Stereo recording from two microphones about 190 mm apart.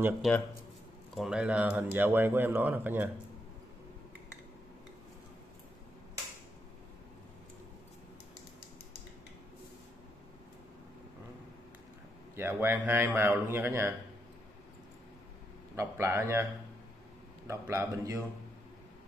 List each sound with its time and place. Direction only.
1.1 s speech: 5° right (ahead or behind)
12.4 s speech: 10° right (ahead or behind)
15.7 s speech: 15° right (ahead or behind)
17.5 s speech: 15° right (ahead or behind)